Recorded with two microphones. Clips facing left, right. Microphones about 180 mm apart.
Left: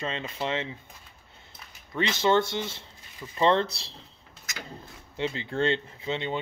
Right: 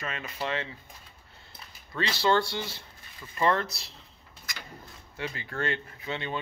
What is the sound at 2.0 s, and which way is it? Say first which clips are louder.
Speech: left 2 dB; 20° left (ahead or behind).